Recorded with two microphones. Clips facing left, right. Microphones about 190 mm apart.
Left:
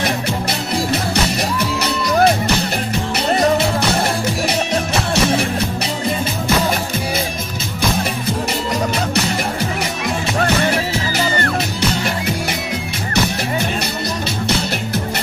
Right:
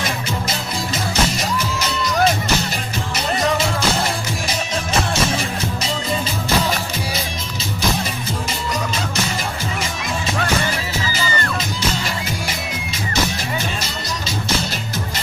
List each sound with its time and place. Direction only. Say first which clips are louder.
0.0 s music: left 4 dB; 65° left (ahead or behind)
3.8 s music: left 3 dB; 65° left (ahead or behind)
10.4 s music: left 7 dB; 65° left (ahead or behind)